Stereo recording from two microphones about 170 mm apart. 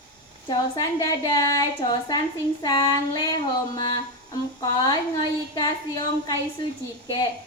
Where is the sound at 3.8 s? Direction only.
25° left (ahead or behind).